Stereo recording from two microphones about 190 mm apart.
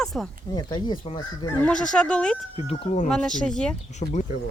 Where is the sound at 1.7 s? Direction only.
5° left (ahead or behind).